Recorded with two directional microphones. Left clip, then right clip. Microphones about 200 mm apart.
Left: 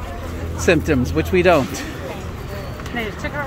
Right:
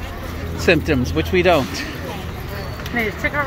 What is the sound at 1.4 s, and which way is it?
Speech, 15° left (ahead or behind).